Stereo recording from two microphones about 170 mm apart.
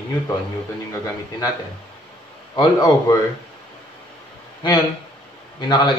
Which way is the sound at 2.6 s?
20° left (ahead or behind).